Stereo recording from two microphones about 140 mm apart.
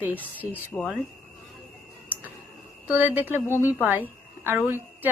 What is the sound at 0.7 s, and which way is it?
Speech, 5° left (ahead or behind).